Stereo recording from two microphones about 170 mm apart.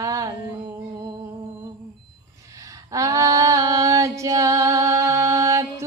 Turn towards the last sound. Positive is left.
turn(degrees=-20)  # may be behind; listen again after turning